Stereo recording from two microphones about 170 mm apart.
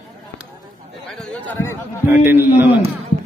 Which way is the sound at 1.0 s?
5° left (ahead or behind).